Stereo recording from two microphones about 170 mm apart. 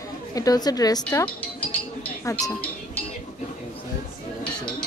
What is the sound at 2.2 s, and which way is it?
Speech, 15° left (ahead or behind).